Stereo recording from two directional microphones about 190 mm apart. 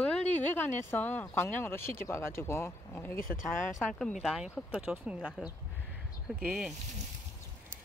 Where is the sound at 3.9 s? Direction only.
Centre (ahead or behind).